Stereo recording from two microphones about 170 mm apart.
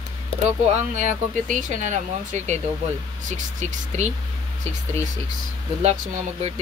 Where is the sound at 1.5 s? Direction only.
50° right (ahead or behind).